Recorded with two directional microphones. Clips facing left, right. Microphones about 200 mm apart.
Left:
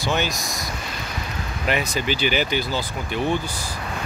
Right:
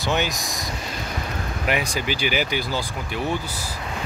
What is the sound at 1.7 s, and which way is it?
Speech, 10° right (ahead or behind).